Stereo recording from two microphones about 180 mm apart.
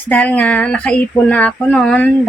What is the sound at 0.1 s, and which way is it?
Speech, 5° left (ahead or behind).